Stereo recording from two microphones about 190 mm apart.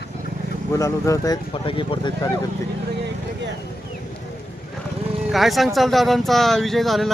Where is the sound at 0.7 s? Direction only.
15° left (ahead or behind).